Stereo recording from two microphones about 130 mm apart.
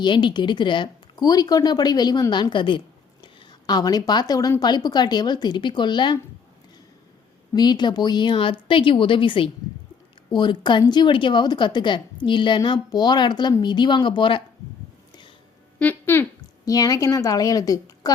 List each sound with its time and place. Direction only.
0.0 s speech: 35° left (ahead or behind)
7.5 s speech: 35° left (ahead or behind)
15.8 s speech: 15° left (ahead or behind)
16.6 s a woman's voice: 30° left (ahead or behind)